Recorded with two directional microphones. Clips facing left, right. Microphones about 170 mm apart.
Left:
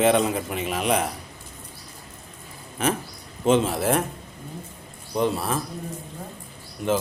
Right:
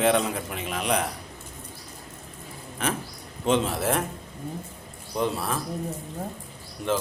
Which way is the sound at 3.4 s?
5° left (ahead or behind).